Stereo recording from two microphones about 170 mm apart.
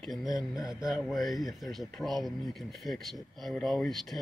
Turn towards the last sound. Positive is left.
turn(degrees=0)  # may be behind; listen again after turning